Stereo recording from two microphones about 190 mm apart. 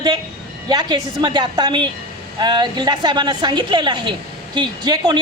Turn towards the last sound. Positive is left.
turn(degrees=-20)  # may be behind; listen again after turning